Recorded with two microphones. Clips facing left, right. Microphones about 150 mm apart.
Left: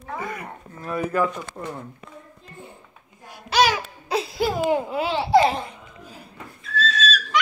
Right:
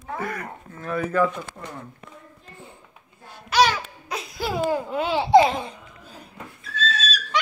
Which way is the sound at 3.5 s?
25° left (ahead or behind).